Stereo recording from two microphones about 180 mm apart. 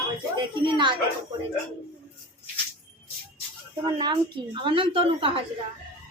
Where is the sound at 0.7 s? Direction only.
25° right (ahead or behind).